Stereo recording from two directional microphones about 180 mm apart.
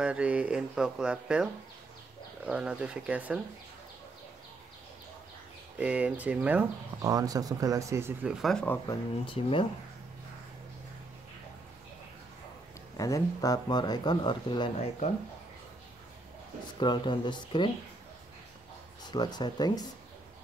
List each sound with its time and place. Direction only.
0.0 s speech: 5° right (ahead or behind)
5.8 s speech: 5° right (ahead or behind)
7.0 s speech: 20° right (ahead or behind); by 8.7 s 5° left (ahead or behind)
8.8 s speech: 30° left (ahead or behind)
12.9 s speech: 20° left (ahead or behind)
16.8 s speech: 25° left (ahead or behind)
19.0 s speech: 25° left (ahead or behind)